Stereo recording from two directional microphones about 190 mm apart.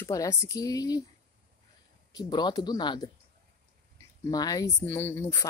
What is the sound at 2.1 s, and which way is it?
Speech, 20° left (ahead or behind).